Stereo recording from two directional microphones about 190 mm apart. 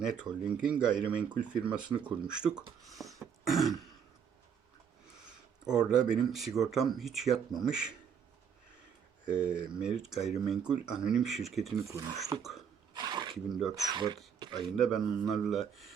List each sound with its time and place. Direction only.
0.0 s speech: 5° right (ahead or behind)
3.0 s throat clearing: centre (ahead or behind)
5.7 s speech: 5° right (ahead or behind)
9.3 s speech: 5° right (ahead or behind)
11.9 s speech: 15° right (ahead or behind)
12.4 s speech: centre (ahead or behind)
12.9 s a sound: 20° right (ahead or behind)
13.9 s speech: 25° right (ahead or behind)
14.3 s a sound: 25° right (ahead or behind)
14.7 s speech: centre (ahead or behind)